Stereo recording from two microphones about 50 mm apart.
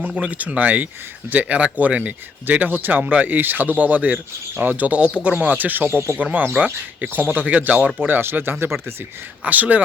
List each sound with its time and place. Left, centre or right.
0.2 s speech: right
7.0 s speech: right
7.9 s speech: right
9.4 s speech: right